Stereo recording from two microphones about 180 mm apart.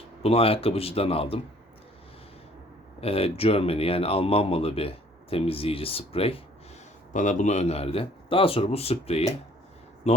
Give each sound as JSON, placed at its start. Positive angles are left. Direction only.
{"t": 0.2, "sound": "speech", "side_deg": 35}
{"t": 3.0, "sound": "speech", "side_deg": 30}
{"t": 7.1, "sound": "speech", "side_deg": 45}